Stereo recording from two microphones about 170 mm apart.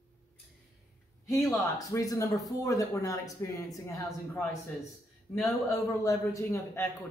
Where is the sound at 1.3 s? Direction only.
Centre (ahead or behind).